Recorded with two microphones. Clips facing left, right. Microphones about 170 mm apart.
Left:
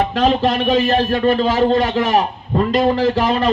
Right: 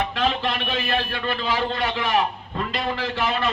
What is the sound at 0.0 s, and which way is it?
A man's voice, 40° left (ahead or behind).